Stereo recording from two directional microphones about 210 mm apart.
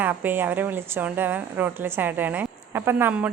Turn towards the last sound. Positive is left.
turn(degrees=-10)  # may be behind; listen again after turning